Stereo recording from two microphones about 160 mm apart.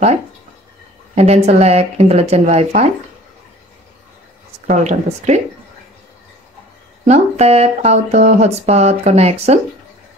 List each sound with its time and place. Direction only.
1.1 s speech: 45° right (ahead or behind)
4.6 s speech: 50° right (ahead or behind)
7.1 s speech: 40° right (ahead or behind)